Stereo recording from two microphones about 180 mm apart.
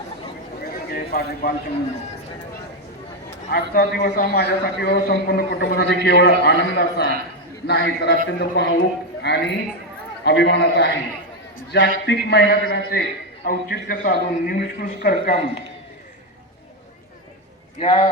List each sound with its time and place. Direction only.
0.9 s speech: 60° left (ahead or behind)
3.5 s a man's voice: 60° left (ahead or behind)
17.7 s a man's voice: 30° left (ahead or behind)